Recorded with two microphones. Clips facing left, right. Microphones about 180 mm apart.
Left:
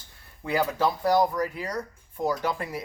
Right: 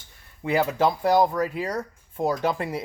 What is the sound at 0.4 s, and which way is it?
Speech, 25° right (ahead or behind).